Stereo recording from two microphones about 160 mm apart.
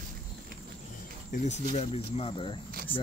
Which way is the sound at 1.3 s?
55° left (ahead or behind).